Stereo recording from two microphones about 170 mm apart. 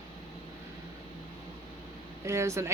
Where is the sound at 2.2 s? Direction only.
15° right (ahead or behind).